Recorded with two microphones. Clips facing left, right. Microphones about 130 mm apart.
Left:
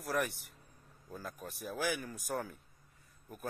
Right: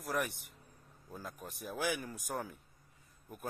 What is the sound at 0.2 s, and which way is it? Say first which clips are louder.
A man's voice: left 2 dB; 15° right (ahead or behind).